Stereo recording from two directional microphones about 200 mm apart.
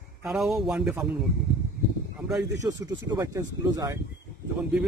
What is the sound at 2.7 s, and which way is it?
Speech, 20° right (ahead or behind).